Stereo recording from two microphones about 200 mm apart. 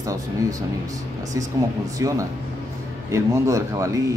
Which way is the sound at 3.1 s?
15° right (ahead or behind).